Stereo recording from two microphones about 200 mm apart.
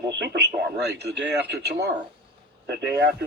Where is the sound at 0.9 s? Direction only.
60° right (ahead or behind).